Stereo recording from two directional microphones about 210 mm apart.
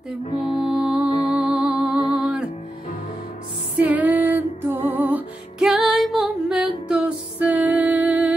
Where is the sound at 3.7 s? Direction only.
10° right (ahead or behind).